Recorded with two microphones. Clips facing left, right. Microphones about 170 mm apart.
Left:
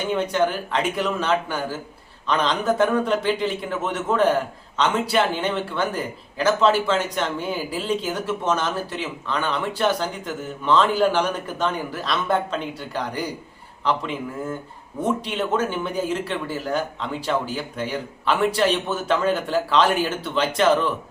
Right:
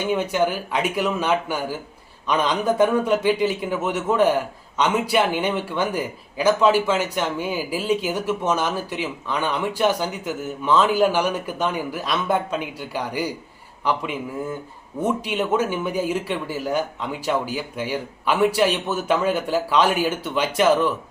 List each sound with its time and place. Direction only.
0.1 s a man's voice: 10° right (ahead or behind)